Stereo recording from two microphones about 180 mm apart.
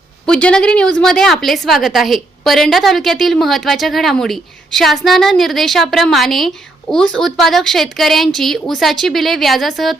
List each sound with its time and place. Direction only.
0.3 s a woman's voice: 5° left (ahead or behind)